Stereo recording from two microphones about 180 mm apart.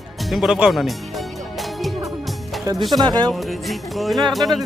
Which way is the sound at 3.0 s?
25° right (ahead or behind).